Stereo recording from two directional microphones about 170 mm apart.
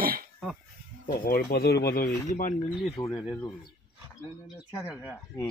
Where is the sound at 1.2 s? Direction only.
60° left (ahead or behind).